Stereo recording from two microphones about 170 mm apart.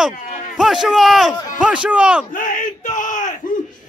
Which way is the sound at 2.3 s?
50° left (ahead or behind).